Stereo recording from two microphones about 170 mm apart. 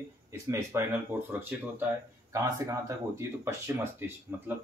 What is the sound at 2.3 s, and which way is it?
Speech, 20° right (ahead or behind).